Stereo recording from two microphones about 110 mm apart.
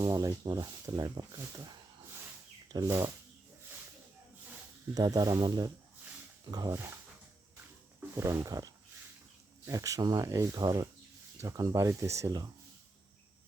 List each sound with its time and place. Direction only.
0.0 s speech: 35° right (ahead or behind)
2.8 s speech: 25° right (ahead or behind)
4.9 s speech: 35° right (ahead or behind)
8.1 s speech: 25° right (ahead or behind)